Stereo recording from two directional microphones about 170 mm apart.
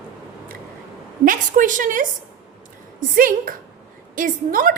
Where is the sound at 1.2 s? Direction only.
50° right (ahead or behind).